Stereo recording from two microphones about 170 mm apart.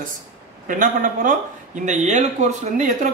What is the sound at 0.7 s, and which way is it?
Speech, 50° right (ahead or behind).